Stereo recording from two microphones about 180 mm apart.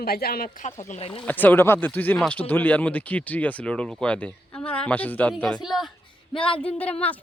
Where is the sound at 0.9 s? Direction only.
30° left (ahead or behind).